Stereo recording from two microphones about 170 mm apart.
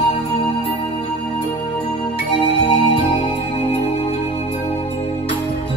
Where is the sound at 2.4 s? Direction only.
35° left (ahead or behind).